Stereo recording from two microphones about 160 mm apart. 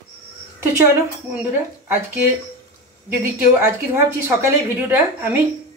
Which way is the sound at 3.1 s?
15° right (ahead or behind).